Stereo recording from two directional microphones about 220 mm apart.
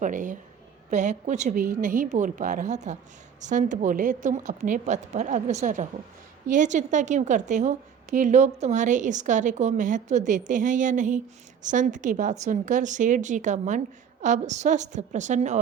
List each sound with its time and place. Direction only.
0.0 s a woman's voice: 35° right (ahead or behind)